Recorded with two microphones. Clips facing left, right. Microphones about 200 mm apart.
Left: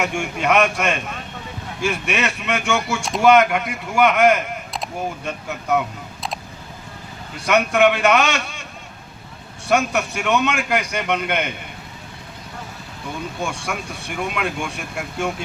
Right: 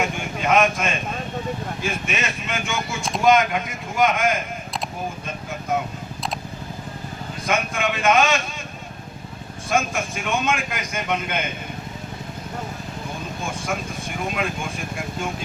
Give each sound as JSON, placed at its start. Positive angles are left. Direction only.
{"t": 0.0, "sound": "a man's voice", "side_deg": 70}
{"t": 7.4, "sound": "a man's voice", "side_deg": 70}
{"t": 9.6, "sound": "a man's voice", "side_deg": 70}
{"t": 13.4, "sound": "a man's voice", "side_deg": 75}